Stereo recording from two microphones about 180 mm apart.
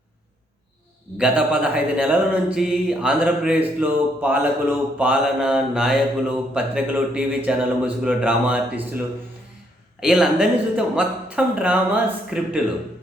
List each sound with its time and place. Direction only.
1.2 s speech: 5° right (ahead or behind)
3.8 s mantra: 10° right (ahead or behind)
10.0 s speech: 5° right (ahead or behind)